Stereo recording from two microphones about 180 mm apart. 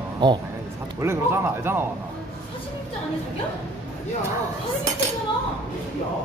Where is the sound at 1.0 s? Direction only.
15° right (ahead or behind).